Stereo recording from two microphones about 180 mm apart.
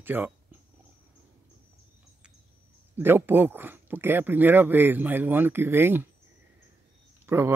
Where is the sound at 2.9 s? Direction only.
10° right (ahead or behind).